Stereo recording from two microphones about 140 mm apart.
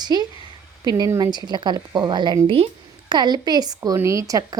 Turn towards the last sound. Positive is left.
turn(degrees=-25)  # may be behind; listen again after turning